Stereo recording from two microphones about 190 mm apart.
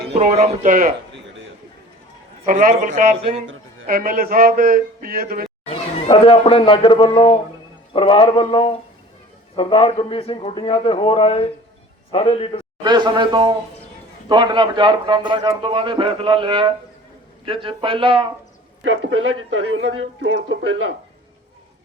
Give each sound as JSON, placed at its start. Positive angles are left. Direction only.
{"t": 0.1, "sound": "speech", "side_deg": -35}
{"t": 2.5, "sound": "speech", "side_deg": -45}
{"t": 5.6, "sound": "a man's voice", "side_deg": 35}
{"t": 12.8, "sound": "a man's voice", "side_deg": -25}
{"t": 18.9, "sound": "speech", "side_deg": -90}